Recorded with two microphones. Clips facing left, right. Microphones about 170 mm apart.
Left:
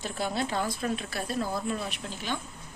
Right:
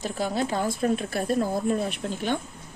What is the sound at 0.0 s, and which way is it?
Speech, 40° right (ahead or behind).